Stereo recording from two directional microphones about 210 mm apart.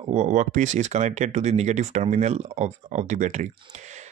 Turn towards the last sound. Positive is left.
turn(degrees=-35)  # may be behind; listen again after turning